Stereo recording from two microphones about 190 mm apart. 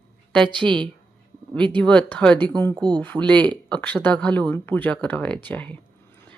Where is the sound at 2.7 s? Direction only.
20° right (ahead or behind).